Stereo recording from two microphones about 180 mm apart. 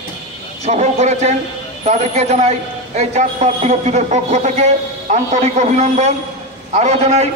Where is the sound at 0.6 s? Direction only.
40° right (ahead or behind).